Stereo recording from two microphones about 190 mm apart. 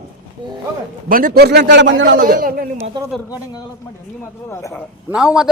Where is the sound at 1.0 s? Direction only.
50° right (ahead or behind); by 1.9 s 65° right (ahead or behind).